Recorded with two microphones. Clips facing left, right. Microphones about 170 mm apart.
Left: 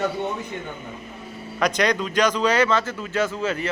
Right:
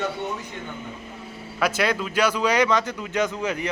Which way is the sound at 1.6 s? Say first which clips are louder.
Left 2 dB; 5° right (ahead or behind).